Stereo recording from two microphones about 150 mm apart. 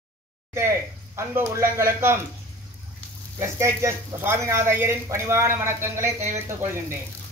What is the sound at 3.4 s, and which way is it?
Speech, 20° right (ahead or behind).